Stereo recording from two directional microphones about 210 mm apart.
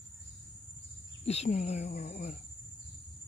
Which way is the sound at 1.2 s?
30° left (ahead or behind).